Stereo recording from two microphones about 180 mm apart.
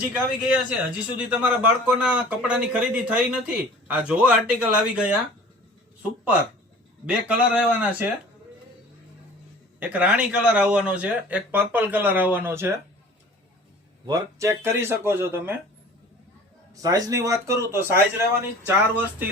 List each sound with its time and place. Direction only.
0.0 s a man's voice: 5° right (ahead or behind)
7.0 s speech: 5° right (ahead or behind)
9.8 s speech: 10° right (ahead or behind)
14.1 s speech: 15° right (ahead or behind)
16.7 s speech: 20° right (ahead or behind)